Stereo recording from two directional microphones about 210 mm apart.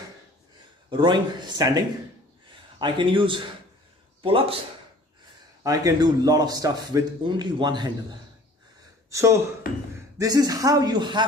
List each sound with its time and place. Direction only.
0.8 s a man's voice: 20° right (ahead or behind)
5.6 s a man's voice: 15° right (ahead or behind)